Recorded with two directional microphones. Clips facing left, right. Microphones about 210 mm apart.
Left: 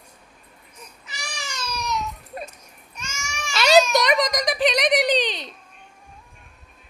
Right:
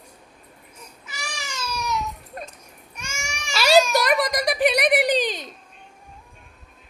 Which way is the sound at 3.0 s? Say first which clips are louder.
Even; 15° right (ahead or behind).